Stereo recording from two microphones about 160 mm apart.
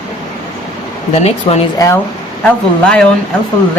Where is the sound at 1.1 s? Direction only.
40° left (ahead or behind).